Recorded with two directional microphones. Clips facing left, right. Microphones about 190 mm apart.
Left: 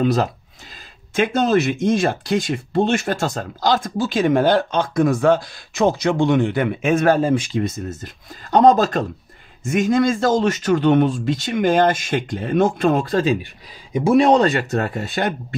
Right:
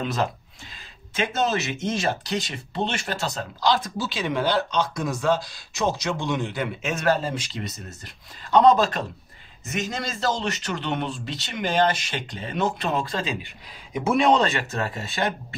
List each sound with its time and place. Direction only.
0.0 s speech: 40° left (ahead or behind)
1.1 s speech: 55° left (ahead or behind)
9.7 s speech: 55° left (ahead or behind)
13.9 s speech: 35° left (ahead or behind)